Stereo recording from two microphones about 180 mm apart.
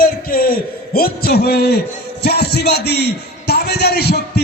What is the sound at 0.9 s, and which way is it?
A man's voice, 60° left (ahead or behind).